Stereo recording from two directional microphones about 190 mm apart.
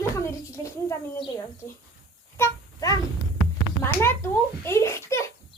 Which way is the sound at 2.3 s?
15° left (ahead or behind).